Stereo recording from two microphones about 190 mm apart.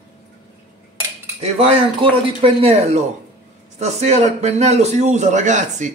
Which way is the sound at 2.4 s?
30° right (ahead or behind).